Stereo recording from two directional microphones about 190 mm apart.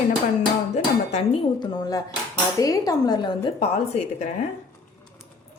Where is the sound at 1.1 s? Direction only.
30° left (ahead or behind).